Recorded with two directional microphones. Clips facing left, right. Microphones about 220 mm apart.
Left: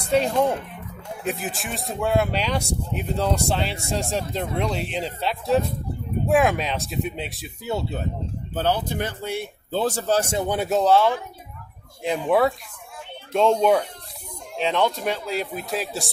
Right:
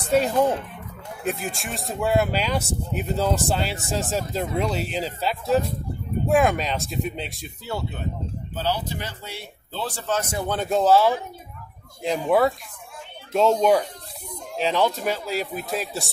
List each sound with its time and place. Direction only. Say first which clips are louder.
0.0 s speech: even; centre (ahead or behind)
8.5 s speech: left 4 dB; 55° left (ahead or behind); by 10.5 s 25° left (ahead or behind)
10.5 s speech: even; 10° left (ahead or behind)
10.8 s speech: right 1 dB; 5° right (ahead or behind)